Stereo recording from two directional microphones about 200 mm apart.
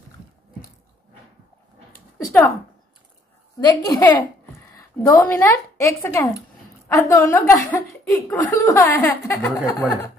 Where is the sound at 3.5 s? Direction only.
15° left (ahead or behind).